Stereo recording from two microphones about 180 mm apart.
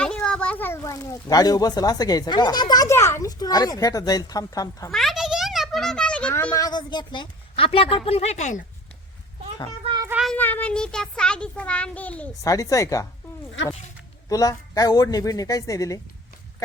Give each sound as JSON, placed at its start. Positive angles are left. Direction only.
{"t": 0.0, "sound": "a child's voice", "side_deg": 5}
{"t": 4.9, "sound": "a sound", "side_deg": 0}
{"t": 9.8, "sound": "child singing", "side_deg": -25}
{"t": 10.1, "sound": "child singing", "side_deg": -5}
{"t": 10.3, "sound": "a child's voice", "side_deg": 10}
{"t": 12.4, "sound": "a child's voice", "side_deg": 20}
{"t": 13.6, "sound": "speech", "side_deg": 90}
{"t": 14.3, "sound": "a child's voice", "side_deg": 20}